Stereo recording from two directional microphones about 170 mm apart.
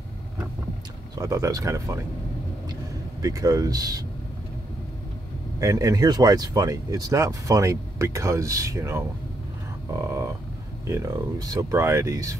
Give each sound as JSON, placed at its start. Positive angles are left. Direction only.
{"t": 1.1, "sound": "speech", "side_deg": -20}
{"t": 3.2, "sound": "speech", "side_deg": -20}
{"t": 5.6, "sound": "speech", "side_deg": -20}